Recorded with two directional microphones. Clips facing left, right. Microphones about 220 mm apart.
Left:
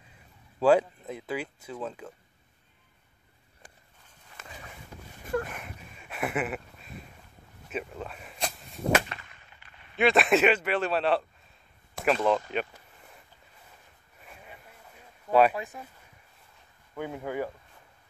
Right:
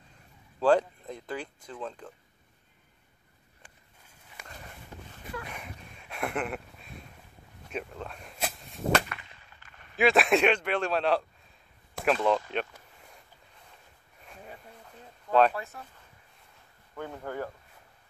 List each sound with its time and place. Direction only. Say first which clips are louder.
0.6 s speech: left 2 dB; 5° left (ahead or behind)
4.4 s walk: left 1 dB; 5° left (ahead or behind)
5.5 s a sound: left 1 dB; centre (ahead or behind)
7.7 s whip: left 1 dB; 5° left (ahead or behind)
9.9 s a man's voice: left 1 dB; centre (ahead or behind)
15.2 s speech: left 1 dB; 10° left (ahead or behind)
16.9 s speech: left 3 dB; 10° left (ahead or behind)